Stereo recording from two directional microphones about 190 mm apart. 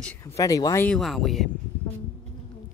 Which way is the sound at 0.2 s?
15° left (ahead or behind).